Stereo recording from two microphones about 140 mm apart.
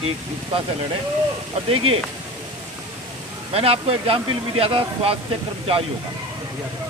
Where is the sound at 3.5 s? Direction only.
45° right (ahead or behind).